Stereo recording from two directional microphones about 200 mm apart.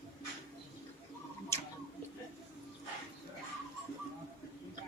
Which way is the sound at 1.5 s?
15° left (ahead or behind).